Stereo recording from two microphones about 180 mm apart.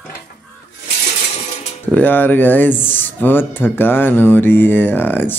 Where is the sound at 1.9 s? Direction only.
10° left (ahead or behind).